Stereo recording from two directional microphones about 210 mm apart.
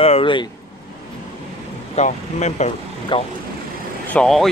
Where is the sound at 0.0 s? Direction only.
25° left (ahead or behind).